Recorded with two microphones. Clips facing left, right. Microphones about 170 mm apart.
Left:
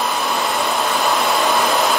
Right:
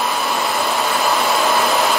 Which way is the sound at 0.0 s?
Centre (ahead or behind).